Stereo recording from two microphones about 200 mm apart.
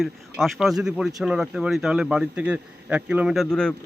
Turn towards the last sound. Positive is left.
turn(degrees=0)  # may be behind; listen again after turning